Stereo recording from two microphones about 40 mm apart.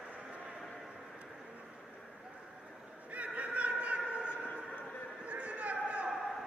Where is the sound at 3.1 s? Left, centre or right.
Right.